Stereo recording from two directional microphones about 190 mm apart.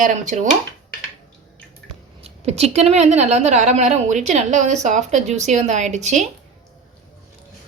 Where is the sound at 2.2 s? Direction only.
35° right (ahead or behind).